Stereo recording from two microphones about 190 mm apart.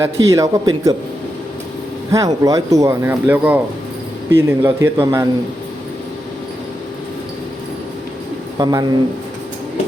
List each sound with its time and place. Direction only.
0.0 s speech: 15° right (ahead or behind)
2.1 s speech: 20° right (ahead or behind)
8.5 s a man's voice: 20° right (ahead or behind)